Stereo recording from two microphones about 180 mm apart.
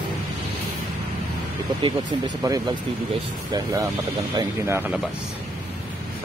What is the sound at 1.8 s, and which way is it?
Speech, 20° right (ahead or behind).